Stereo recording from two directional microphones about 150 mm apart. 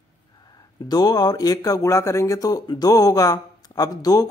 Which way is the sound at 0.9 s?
25° left (ahead or behind).